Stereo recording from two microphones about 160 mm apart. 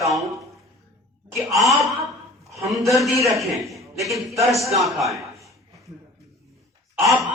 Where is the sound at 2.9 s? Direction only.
Centre (ahead or behind).